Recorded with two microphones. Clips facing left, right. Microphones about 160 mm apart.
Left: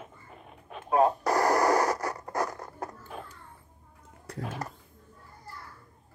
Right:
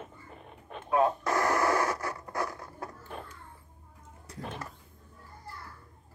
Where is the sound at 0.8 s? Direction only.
40° left (ahead or behind).